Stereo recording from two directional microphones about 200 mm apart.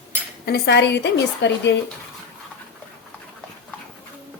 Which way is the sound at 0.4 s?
55° left (ahead or behind).